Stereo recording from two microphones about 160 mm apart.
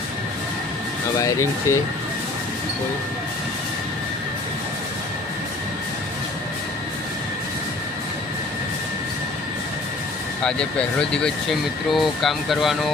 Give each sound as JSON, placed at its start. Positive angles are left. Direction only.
{"t": 1.2, "sound": "speech", "side_deg": 20}
{"t": 10.4, "sound": "speech", "side_deg": 5}